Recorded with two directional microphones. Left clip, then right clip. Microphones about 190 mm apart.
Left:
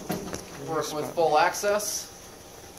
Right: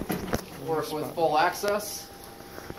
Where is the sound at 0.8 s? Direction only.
15° left (ahead or behind).